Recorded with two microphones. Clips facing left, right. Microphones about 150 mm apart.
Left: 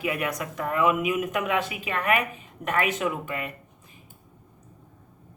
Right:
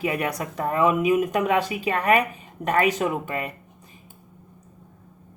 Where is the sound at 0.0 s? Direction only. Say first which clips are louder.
Right 3 dB; 35° right (ahead or behind).